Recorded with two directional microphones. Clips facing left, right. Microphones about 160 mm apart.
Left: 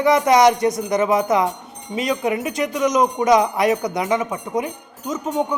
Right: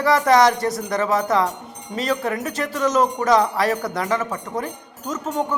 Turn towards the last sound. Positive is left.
turn(degrees=10)  # may be behind; listen again after turning